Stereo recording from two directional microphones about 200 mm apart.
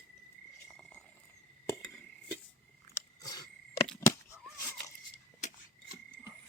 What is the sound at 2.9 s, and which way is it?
Chewing, 20° left (ahead or behind).